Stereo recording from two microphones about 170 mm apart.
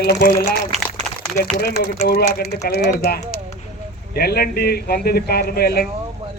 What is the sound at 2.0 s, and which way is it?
A man's voice, 65° left (ahead or behind).